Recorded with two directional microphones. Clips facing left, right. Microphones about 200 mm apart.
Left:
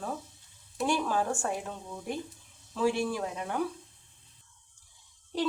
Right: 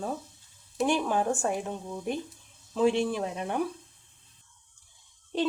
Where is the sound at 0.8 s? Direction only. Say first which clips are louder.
Right 3 dB; 20° right (ahead or behind).